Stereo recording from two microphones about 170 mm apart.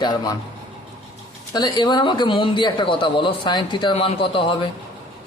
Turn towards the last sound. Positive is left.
turn(degrees=30)  # may be behind; listen again after turning